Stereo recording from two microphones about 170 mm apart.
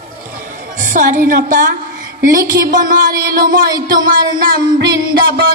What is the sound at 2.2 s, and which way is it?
Music, 55° right (ahead or behind).